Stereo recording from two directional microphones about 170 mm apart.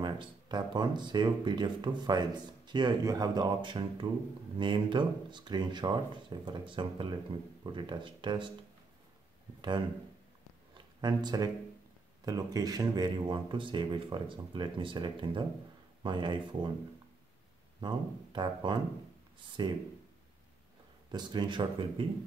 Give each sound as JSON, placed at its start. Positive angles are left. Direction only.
{"t": 0.0, "sound": "speech", "side_deg": -25}
{"t": 9.6, "sound": "speech", "side_deg": -25}
{"t": 11.0, "sound": "speech", "side_deg": -25}
{"t": 17.7, "sound": "speech", "side_deg": -25}
{"t": 21.1, "sound": "speech", "side_deg": -25}